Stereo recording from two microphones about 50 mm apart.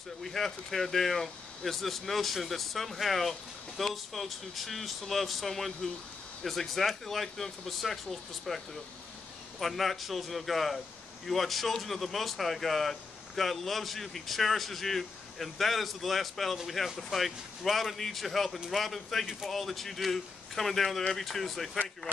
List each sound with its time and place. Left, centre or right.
0.2 s speech: centre